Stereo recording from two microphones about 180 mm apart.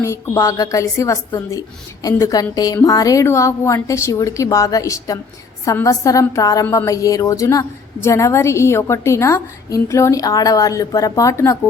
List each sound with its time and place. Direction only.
0.0 s a woman's voice: 15° left (ahead or behind)